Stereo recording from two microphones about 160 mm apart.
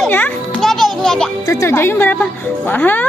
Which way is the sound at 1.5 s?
15° left (ahead or behind).